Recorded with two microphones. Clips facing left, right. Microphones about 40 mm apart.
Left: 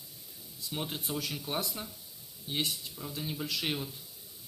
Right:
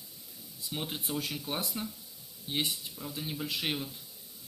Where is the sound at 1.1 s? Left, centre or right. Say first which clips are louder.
Right 1 dB; right.